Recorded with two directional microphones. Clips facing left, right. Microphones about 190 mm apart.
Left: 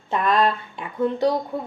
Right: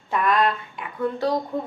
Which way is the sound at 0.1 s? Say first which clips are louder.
Left 1 dB; 30° left (ahead or behind).